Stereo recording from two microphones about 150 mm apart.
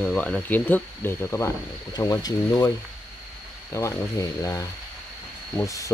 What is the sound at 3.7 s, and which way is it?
Speech, 20° left (ahead or behind).